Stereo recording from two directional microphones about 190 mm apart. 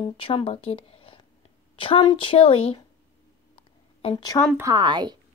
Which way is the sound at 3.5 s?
25° left (ahead or behind).